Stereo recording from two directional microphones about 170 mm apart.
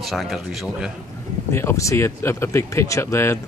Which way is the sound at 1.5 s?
15° left (ahead or behind).